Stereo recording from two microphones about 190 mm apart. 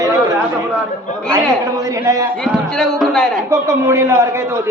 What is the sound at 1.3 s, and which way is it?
Speech, 15° right (ahead or behind).